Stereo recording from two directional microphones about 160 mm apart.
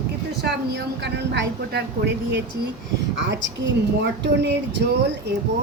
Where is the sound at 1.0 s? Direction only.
90° right.